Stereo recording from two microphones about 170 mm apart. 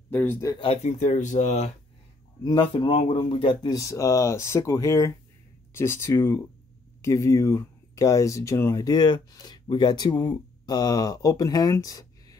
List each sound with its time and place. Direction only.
0.1 s speech: 10° left (ahead or behind)
0.8 s speech: 45° left (ahead or behind)
2.4 s speech: 30° left (ahead or behind)